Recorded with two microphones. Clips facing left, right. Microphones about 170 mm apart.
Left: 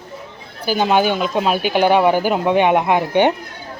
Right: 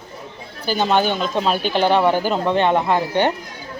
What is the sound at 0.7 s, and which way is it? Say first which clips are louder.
Speech: left 2 dB; 10° left (ahead or behind).